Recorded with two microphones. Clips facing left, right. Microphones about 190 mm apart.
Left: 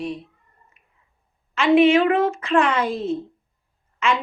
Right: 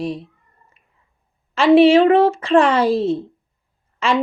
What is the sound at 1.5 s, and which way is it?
Speech, 35° right (ahead or behind).